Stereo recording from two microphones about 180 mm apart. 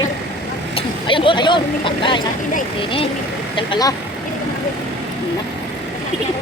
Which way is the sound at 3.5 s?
25° left (ahead or behind).